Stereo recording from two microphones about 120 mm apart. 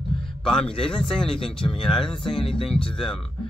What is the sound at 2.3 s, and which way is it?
Speech, 45° left (ahead or behind).